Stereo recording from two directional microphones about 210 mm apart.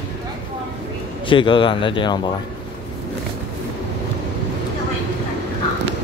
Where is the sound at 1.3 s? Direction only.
25° left (ahead or behind).